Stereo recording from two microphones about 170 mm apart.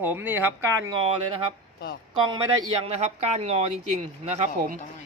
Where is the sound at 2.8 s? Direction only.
40° right (ahead or behind).